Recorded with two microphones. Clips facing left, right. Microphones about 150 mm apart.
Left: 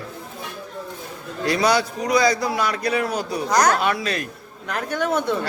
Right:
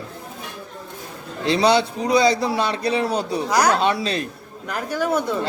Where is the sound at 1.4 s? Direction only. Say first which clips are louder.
Right 2 dB; 25° right (ahead or behind).